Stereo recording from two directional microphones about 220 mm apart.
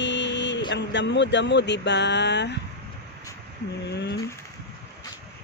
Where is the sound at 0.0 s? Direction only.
55° left (ahead or behind).